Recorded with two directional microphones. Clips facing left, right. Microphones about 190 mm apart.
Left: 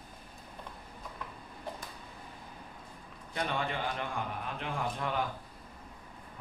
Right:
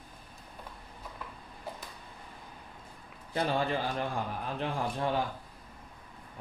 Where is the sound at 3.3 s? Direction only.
35° right (ahead or behind).